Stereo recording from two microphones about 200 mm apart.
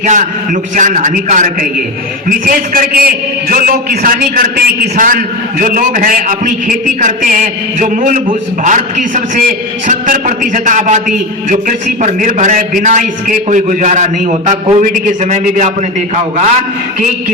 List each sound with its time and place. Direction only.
0.0 s a man's voice: 40° right (ahead or behind)
12.0 s a man's voice: 35° right (ahead or behind)